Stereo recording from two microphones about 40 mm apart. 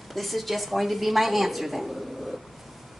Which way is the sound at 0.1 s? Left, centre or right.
Centre.